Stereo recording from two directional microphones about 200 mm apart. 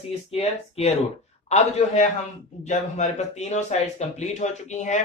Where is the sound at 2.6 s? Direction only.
35° left (ahead or behind).